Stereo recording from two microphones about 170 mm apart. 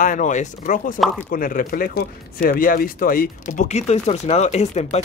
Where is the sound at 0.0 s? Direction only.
50° left (ahead or behind).